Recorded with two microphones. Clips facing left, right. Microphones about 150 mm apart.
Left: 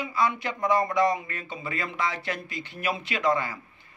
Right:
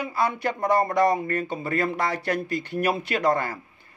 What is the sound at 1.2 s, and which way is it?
Speech, 50° right (ahead or behind).